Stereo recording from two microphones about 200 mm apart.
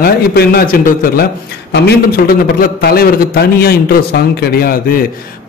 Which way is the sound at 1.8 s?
45° left (ahead or behind).